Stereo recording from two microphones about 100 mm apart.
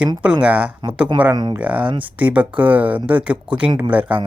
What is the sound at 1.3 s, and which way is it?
Speech, 45° right (ahead or behind).